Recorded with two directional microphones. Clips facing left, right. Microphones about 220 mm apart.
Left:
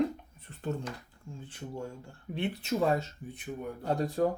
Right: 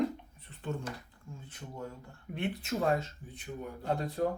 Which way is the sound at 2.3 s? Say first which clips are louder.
Left 3 dB; 35° left (ahead or behind).